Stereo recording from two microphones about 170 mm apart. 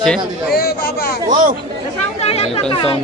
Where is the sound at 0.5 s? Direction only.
65° left (ahead or behind).